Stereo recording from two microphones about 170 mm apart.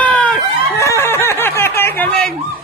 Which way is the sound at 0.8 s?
15° left (ahead or behind).